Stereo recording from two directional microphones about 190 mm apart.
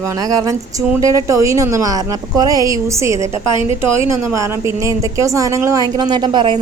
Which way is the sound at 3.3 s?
25° left (ahead or behind).